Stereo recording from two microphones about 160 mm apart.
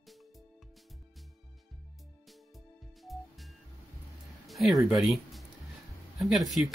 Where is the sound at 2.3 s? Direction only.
Centre (ahead or behind).